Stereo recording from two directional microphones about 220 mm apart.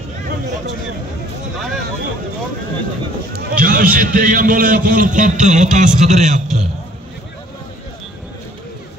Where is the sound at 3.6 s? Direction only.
40° right (ahead or behind).